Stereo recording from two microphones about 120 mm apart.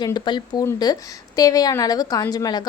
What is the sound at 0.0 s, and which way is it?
A woman's voice, 35° left (ahead or behind).